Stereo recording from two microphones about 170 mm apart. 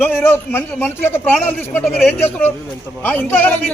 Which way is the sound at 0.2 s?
15° left (ahead or behind).